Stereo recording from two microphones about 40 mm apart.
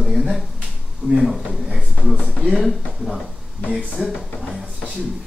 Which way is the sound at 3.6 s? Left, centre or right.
Centre.